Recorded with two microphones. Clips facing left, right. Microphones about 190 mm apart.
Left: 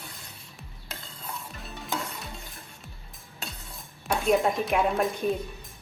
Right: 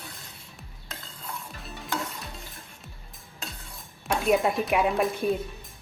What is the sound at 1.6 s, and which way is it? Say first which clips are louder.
Music: right 1 dB; centre (ahead or behind).